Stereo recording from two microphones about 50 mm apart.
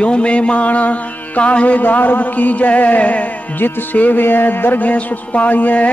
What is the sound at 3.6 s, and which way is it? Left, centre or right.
Speech, left.